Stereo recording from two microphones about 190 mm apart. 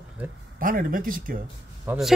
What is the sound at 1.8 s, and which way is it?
Speech, 10° right (ahead or behind).